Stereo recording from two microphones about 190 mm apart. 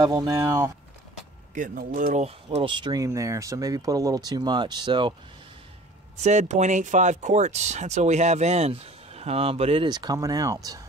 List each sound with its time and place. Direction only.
0.0 s speech: 20° right (ahead or behind)
1.5 s speech: 45° right (ahead or behind); by 5.1 s 25° right (ahead or behind)
6.2 s speech: 35° right (ahead or behind); by 10.8 s 20° right (ahead or behind)